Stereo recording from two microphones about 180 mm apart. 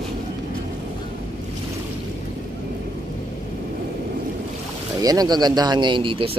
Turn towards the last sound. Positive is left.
turn(degrees=-30)  # may be behind; listen again after turning